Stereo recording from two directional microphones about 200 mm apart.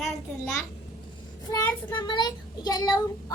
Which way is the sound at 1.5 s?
20° left (ahead or behind).